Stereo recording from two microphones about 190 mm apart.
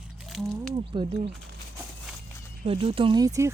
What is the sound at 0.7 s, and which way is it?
Speech, 25° right (ahead or behind).